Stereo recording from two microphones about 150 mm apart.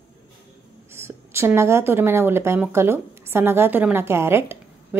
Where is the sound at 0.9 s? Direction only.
15° right (ahead or behind).